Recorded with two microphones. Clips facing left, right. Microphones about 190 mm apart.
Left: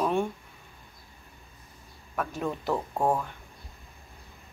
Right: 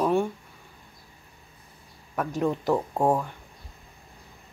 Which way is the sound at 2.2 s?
15° right (ahead or behind).